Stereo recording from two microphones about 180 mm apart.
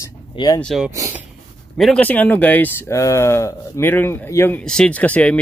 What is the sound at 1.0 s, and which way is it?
Speech, 15° right (ahead or behind).